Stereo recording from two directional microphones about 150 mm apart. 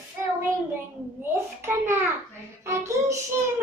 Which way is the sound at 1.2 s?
15° right (ahead or behind).